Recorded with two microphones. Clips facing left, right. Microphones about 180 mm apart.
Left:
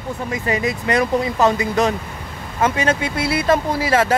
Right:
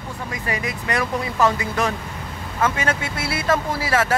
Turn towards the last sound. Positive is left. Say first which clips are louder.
# left 4 dB
turn(degrees=20)  # may be behind; listen again after turning